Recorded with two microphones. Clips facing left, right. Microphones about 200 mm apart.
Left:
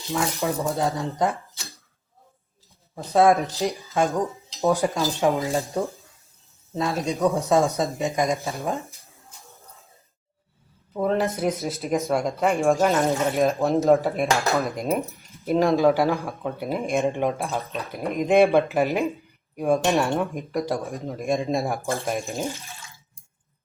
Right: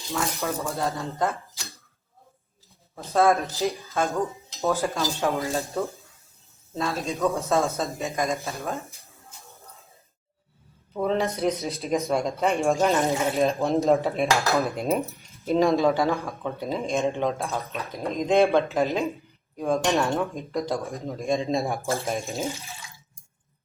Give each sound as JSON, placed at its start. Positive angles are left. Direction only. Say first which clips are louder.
{"t": 0.1, "sound": "speech", "louder": "left 3 dB", "side_deg": 15}
{"t": 2.9, "sound": "speech", "louder": "left 3 dB", "side_deg": 15}
{"t": 10.9, "sound": "cutlery", "louder": "left 2 dB", "side_deg": 5}
{"t": 16.0, "sound": "speech", "louder": "left 2 dB", "side_deg": 10}
{"t": 17.4, "sound": "cutlery", "louder": "left 2 dB", "side_deg": 0}
{"t": 17.9, "sound": "speech", "louder": "left 2 dB", "side_deg": 15}
{"t": 21.1, "sound": "cutlery", "louder": "left 1 dB", "side_deg": 0}